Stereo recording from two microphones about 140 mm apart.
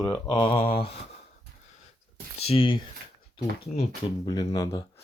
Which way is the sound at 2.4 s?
40° left (ahead or behind).